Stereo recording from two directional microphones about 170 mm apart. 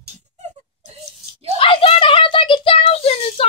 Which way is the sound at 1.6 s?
30° left (ahead or behind).